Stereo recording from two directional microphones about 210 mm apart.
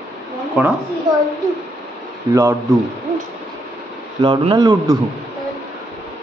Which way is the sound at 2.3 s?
15° right (ahead or behind).